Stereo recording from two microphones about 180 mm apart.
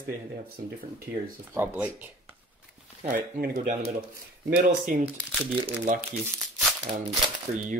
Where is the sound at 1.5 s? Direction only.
10° right (ahead or behind).